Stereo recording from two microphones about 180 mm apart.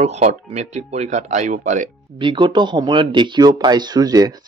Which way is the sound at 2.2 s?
25° right (ahead or behind).